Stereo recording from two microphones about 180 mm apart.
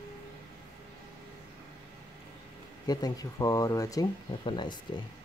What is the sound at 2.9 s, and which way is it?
Speech, 20° left (ahead or behind).